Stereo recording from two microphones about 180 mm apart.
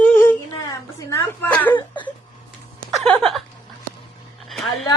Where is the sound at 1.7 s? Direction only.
25° left (ahead or behind).